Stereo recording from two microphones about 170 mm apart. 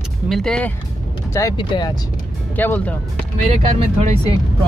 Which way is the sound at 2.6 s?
10° left (ahead or behind).